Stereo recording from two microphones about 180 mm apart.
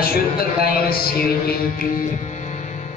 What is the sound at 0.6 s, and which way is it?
Speech, 55° left (ahead or behind).